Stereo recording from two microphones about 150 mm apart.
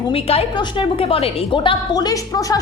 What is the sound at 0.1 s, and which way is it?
A woman's voice, 40° left (ahead or behind).